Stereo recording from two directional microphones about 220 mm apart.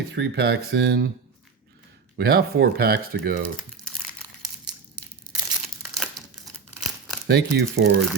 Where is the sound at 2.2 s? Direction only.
45° right (ahead or behind).